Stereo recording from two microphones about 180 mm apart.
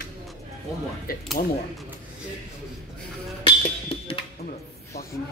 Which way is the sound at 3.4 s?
30° left (ahead or behind).